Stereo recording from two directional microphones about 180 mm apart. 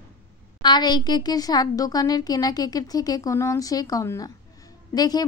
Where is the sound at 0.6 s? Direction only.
25° left (ahead or behind).